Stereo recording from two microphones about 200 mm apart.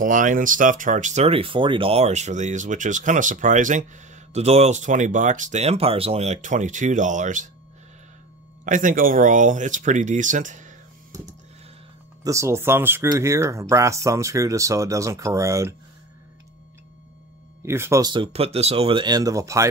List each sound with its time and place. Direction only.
0.0 s speech: 40° right (ahead or behind)
8.6 s speech: 40° right (ahead or behind)
12.2 s speech: 15° right (ahead or behind)
17.6 s speech: 10° right (ahead or behind)